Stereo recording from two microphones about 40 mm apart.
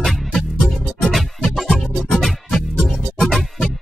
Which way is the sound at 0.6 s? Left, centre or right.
Centre.